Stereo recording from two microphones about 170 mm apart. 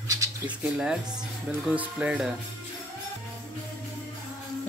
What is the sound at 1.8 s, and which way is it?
Speech, 10° right (ahead or behind).